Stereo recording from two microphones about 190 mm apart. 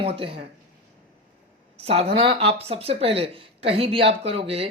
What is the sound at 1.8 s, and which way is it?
A woman's voice, 30° right (ahead or behind).